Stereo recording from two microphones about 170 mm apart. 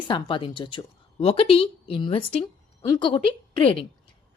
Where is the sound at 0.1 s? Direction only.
30° left (ahead or behind).